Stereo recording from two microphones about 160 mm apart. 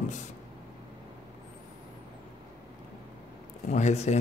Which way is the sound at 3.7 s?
45° left (ahead or behind).